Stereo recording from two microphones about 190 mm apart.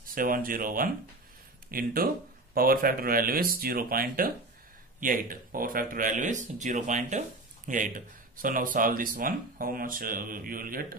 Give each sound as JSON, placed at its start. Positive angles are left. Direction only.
{"t": 0.0, "sound": "speech", "side_deg": -50}